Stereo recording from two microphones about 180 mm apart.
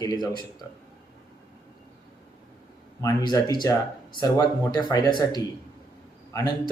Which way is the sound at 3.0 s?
25° left (ahead or behind).